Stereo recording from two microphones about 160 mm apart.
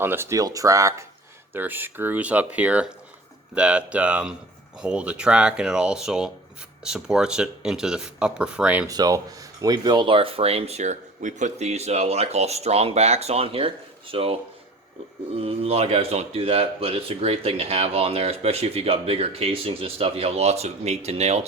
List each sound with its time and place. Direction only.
0.0 s speech: 15° right (ahead or behind)
8.9 s speech: 25° right (ahead or behind)
15.4 s speech: 35° right (ahead or behind)